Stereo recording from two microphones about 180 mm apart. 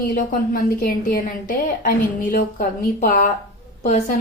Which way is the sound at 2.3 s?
50° left (ahead or behind).